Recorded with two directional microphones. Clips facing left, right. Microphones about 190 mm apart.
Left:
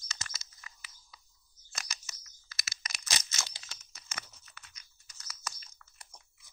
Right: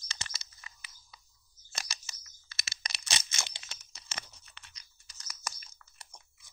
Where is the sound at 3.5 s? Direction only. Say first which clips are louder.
Right 1 dB; 25° right (ahead or behind).